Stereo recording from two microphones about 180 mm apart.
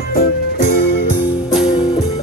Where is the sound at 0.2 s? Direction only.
60° left (ahead or behind).